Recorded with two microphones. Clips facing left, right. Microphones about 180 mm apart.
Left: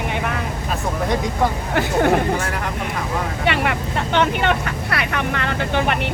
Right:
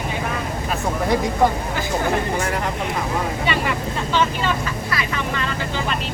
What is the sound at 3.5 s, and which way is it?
Speech, 65° left (ahead or behind).